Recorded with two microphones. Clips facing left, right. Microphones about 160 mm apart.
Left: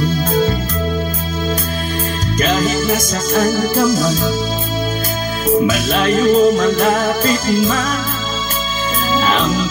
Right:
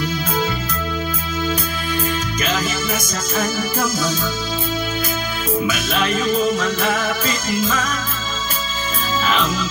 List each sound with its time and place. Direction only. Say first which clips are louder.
2.5 s music: left 7 dB; 40° left (ahead or behind)
5.7 s music: left 5 dB; 45° left (ahead or behind)